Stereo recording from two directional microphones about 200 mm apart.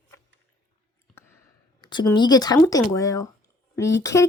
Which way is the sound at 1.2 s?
10° left (ahead or behind).